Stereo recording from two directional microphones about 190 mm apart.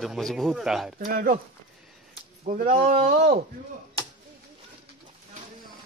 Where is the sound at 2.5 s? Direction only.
45° right (ahead or behind).